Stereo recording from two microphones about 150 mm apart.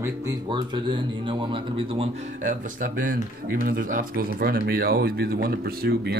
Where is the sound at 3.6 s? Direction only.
75° right (ahead or behind).